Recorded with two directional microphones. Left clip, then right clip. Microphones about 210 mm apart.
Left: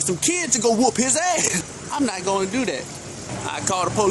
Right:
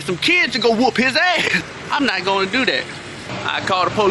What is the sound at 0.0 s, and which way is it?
Speech, 15° left (ahead or behind).